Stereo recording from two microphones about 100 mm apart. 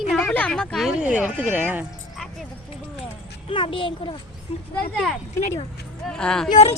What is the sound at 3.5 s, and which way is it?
Speech, 65° left (ahead or behind).